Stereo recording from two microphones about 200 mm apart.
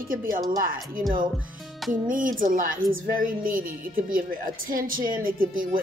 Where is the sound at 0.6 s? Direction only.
45° right (ahead or behind).